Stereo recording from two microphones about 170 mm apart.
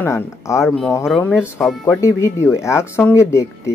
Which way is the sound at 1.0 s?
5° left (ahead or behind).